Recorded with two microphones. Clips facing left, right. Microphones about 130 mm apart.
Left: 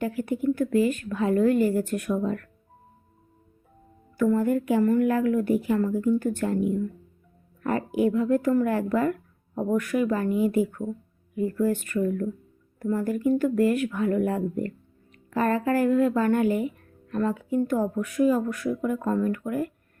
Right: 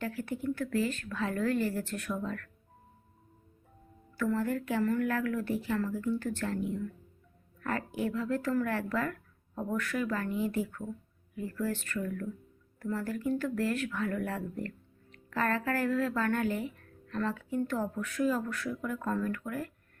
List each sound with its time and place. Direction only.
0.0 s a woman's voice: 15° left (ahead or behind)
4.2 s a woman's voice: 15° left (ahead or behind)